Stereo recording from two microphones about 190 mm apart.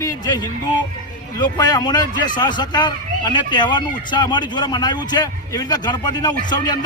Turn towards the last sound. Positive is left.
turn(degrees=20)  # may be behind; listen again after turning